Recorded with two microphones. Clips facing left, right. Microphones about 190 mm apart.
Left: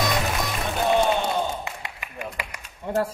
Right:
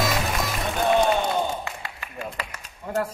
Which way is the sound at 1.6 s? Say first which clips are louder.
Even; 15° left (ahead or behind).